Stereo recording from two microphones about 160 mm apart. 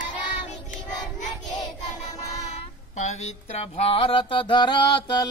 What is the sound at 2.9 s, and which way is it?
Music, 45° left (ahead or behind).